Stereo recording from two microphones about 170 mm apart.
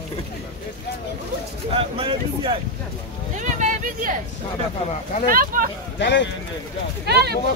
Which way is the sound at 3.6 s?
50° right (ahead or behind).